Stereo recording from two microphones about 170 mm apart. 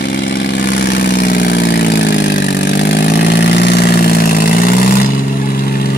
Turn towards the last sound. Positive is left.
turn(degrees=60)  # may be behind; listen again after turning